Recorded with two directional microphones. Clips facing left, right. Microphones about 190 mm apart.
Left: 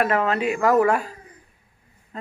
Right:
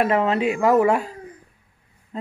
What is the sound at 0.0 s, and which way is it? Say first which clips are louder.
Speech: right 2 dB; 25° right (ahead or behind).